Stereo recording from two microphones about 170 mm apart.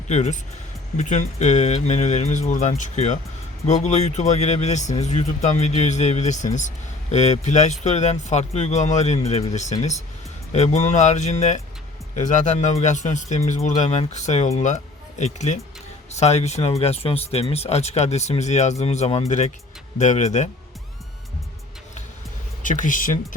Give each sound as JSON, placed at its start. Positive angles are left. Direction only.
{"t": 0.1, "sound": "speech", "side_deg": 40}
{"t": 22.6, "sound": "speech", "side_deg": 50}